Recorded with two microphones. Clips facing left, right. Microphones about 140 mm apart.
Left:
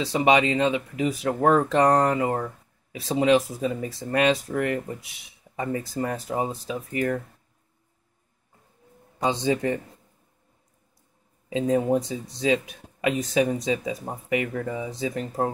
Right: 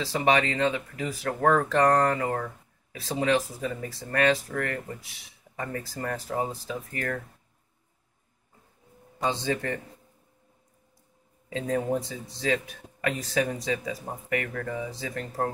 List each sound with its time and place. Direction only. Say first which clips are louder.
0.0 s speech: left 4 dB; 20° left (ahead or behind)
9.2 s speech: left 4 dB; 20° left (ahead or behind)
11.4 s speech: left 5 dB; 15° left (ahead or behind)